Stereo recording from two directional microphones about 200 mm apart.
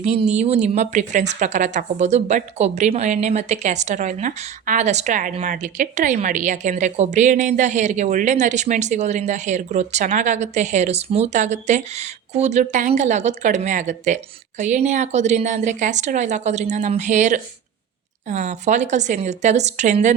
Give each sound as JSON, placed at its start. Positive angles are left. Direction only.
{"t": 0.0, "sound": "a woman's voice", "side_deg": -30}